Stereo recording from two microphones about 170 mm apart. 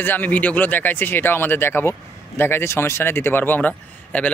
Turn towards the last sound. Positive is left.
turn(degrees=10)  # may be behind; listen again after turning